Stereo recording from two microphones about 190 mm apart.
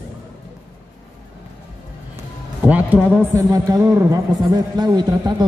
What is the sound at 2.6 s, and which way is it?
A man's voice, 10° right (ahead or behind).